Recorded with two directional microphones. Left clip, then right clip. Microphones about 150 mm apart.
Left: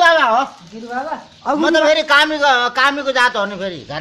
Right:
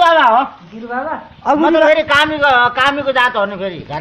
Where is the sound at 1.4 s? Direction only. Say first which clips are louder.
Right 3 dB; 30° left (ahead or behind).